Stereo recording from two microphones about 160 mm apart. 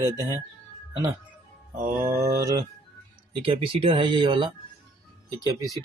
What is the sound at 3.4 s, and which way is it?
A man's voice, 35° right (ahead or behind).